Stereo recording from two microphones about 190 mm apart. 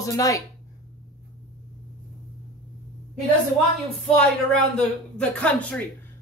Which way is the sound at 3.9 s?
5° left (ahead or behind).